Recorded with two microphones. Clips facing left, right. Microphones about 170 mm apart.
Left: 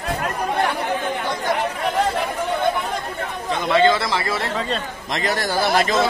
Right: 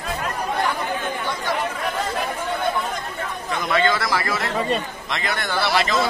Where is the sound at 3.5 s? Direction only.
25° left (ahead or behind).